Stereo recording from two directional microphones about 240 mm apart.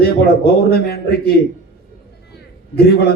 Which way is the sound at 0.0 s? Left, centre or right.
Left.